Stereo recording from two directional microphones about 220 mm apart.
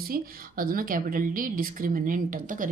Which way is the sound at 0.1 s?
40° right (ahead or behind).